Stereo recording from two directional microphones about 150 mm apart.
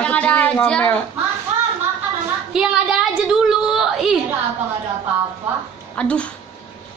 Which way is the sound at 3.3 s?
5° right (ahead or behind).